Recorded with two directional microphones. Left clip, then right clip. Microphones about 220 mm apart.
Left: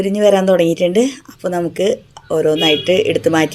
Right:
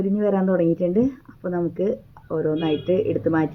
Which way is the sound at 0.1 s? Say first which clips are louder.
Left 12 dB; 25° left (ahead or behind).